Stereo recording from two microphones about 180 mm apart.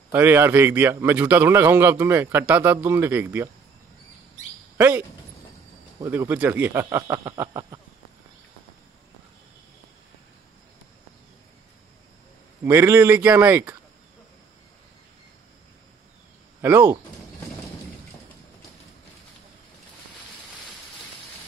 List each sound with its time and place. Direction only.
0.1 s a man's voice: 10° right (ahead or behind)
4.7 s a man's voice: 10° right (ahead or behind)
12.6 s a man's voice: 15° right (ahead or behind)
16.6 s a man's voice: 10° right (ahead or behind)